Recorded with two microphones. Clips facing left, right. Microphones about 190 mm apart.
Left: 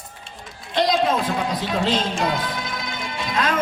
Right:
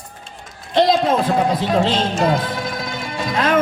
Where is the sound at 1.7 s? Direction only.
45° right (ahead or behind).